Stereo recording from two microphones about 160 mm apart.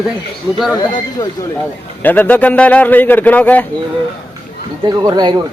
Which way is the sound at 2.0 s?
10° left (ahead or behind).